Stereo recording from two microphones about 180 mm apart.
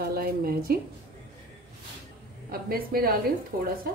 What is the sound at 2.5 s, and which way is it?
Speech, 55° right (ahead or behind).